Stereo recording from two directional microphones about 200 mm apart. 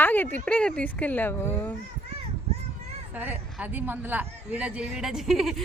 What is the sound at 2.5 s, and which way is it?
Children playing, 30° right (ahead or behind).